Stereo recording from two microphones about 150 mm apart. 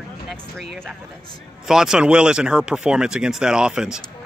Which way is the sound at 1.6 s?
5° right (ahead or behind).